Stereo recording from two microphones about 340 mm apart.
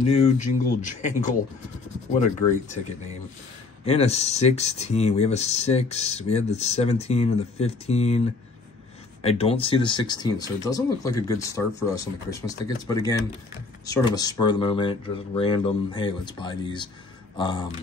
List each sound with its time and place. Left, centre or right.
0.0 s speech: centre
9.2 s speech: centre
13.8 s speech: centre